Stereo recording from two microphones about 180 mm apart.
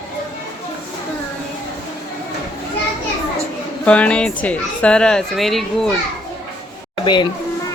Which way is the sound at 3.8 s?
5° left (ahead or behind).